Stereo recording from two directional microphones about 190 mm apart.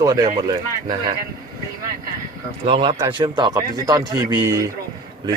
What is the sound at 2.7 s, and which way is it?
Speech, 25° right (ahead or behind).